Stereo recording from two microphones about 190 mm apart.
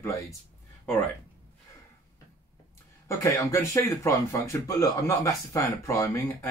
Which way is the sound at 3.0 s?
15° left (ahead or behind).